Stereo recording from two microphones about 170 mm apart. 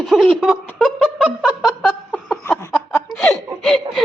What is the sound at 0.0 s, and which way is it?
Snicker, centre (ahead or behind).